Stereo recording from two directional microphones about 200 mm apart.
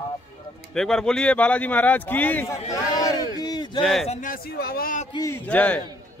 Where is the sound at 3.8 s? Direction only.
Centre (ahead or behind).